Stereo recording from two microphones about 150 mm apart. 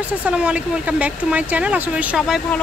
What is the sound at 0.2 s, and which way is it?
Speech, 10° right (ahead or behind).